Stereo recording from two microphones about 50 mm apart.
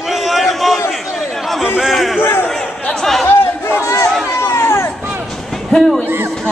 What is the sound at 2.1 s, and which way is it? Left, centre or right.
Crowd, left.